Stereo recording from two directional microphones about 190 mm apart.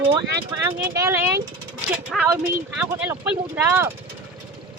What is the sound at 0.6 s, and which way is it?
Speech, 15° right (ahead or behind).